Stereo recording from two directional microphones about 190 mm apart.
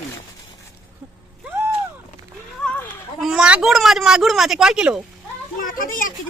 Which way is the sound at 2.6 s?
5° left (ahead or behind).